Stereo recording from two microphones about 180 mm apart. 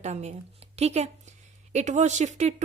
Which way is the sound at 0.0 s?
40° right (ahead or behind).